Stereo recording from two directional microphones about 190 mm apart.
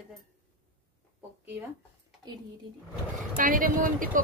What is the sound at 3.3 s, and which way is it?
Speech, 45° right (ahead or behind).